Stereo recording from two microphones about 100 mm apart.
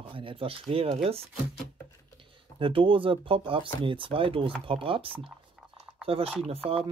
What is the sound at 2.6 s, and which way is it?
Speech, 60° right (ahead or behind).